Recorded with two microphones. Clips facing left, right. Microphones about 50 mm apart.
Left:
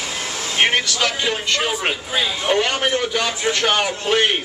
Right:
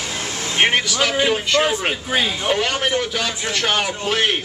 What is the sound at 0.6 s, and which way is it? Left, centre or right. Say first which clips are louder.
A man's voice: right 1 dB; centre.